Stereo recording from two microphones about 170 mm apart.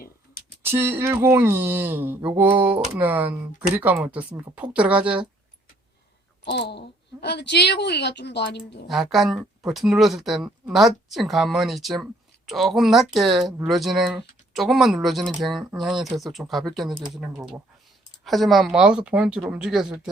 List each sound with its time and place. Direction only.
0.6 s speech: 15° right (ahead or behind)
6.4 s a woman's voice: 85° left
8.9 s speech: centre (ahead or behind)